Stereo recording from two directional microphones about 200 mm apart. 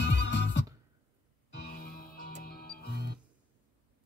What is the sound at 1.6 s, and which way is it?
Music, 45° left (ahead or behind).